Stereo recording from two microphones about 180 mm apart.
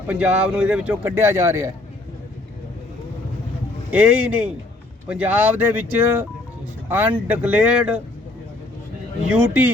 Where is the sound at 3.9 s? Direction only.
10° right (ahead or behind).